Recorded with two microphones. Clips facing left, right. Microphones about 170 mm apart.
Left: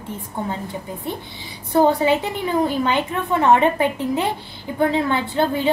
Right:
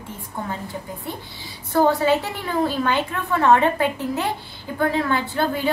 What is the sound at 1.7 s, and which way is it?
A woman's voice, 20° left (ahead or behind).